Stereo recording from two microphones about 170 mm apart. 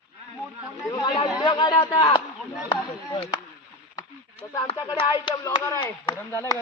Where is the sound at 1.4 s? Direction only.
25° left (ahead or behind).